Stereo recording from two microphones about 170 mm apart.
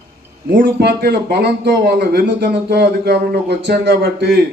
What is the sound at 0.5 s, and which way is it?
A man's voice, 65° right (ahead or behind).